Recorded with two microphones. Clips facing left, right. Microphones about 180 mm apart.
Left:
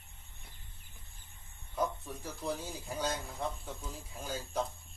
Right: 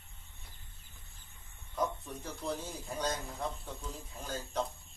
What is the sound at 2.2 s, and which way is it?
Speech, 10° left (ahead or behind).